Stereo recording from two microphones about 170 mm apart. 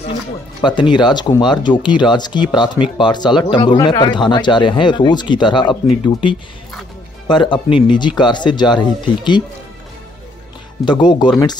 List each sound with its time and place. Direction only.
0.6 s speech: 25° left (ahead or behind)
10.9 s speech: 25° left (ahead or behind)